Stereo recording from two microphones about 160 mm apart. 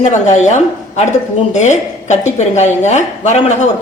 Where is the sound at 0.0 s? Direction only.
45° left (ahead or behind).